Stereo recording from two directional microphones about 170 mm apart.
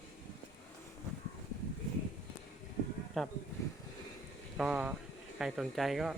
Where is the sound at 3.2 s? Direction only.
5° left (ahead or behind).